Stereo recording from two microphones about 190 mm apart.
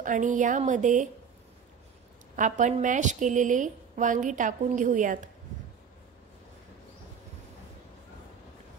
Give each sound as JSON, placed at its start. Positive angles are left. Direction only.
{"t": 0.0, "sound": "a woman's voice", "side_deg": -40}
{"t": 2.3, "sound": "a woman's voice", "side_deg": -40}